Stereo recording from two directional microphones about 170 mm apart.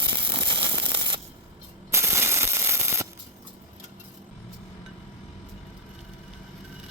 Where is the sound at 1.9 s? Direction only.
15° right (ahead or behind).